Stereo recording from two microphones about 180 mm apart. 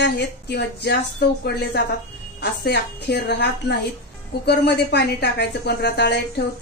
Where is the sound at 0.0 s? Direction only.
65° left (ahead or behind).